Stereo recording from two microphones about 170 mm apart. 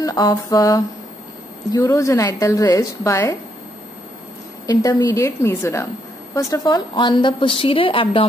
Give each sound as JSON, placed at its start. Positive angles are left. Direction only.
{"t": 0.0, "sound": "a woman's voice", "side_deg": 25}
{"t": 4.6, "sound": "a woman's voice", "side_deg": 25}